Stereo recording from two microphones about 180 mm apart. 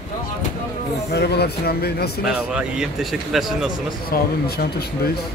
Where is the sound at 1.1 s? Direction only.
65° left (ahead or behind).